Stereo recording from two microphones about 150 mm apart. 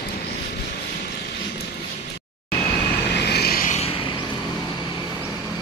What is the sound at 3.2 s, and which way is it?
Vehicle, 90° left.